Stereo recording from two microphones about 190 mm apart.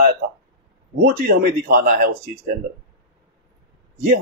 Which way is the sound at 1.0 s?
50° right (ahead or behind).